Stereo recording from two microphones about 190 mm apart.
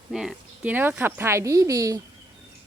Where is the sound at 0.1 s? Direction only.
Centre (ahead or behind).